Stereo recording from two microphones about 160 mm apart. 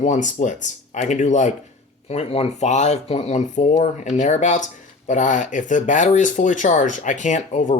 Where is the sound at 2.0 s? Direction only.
40° left (ahead or behind).